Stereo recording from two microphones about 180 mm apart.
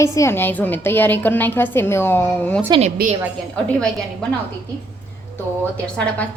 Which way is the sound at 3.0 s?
60° right (ahead or behind).